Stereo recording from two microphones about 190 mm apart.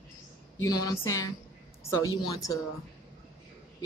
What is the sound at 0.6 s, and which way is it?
Speech, 20° left (ahead or behind).